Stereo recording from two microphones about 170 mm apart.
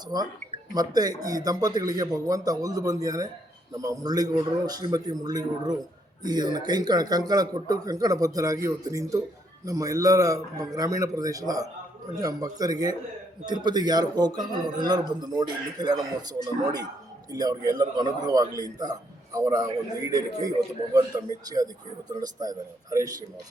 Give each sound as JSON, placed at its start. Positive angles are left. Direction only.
{"t": 0.1, "sound": "a man's voice", "side_deg": -25}